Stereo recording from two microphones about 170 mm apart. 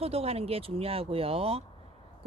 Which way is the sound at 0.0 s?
35° right (ahead or behind).